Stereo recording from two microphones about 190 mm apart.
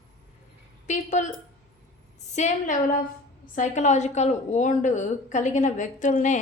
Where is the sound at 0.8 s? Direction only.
40° left (ahead or behind).